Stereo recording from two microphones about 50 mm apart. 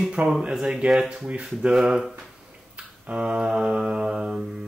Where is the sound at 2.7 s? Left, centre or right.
Right.